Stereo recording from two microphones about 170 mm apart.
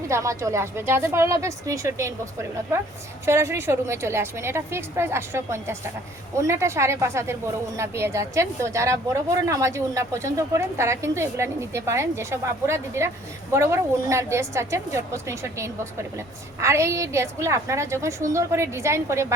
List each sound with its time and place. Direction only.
0.1 s a woman's voice: 15° right (ahead or behind)
3.2 s a woman's voice: 15° right (ahead or behind)